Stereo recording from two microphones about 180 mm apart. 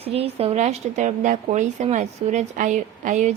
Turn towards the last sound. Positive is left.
turn(degrees=-40)  # may be behind; listen again after turning